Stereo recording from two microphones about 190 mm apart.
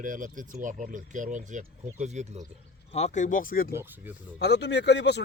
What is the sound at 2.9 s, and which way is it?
Speech, 35° left (ahead or behind).